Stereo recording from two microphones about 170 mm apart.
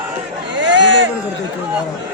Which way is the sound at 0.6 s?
90° right.